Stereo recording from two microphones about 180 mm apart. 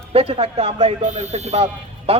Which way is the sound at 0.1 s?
35° right (ahead or behind).